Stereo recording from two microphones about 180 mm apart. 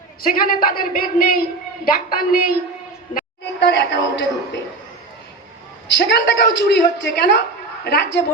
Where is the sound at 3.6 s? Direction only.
70° left (ahead or behind).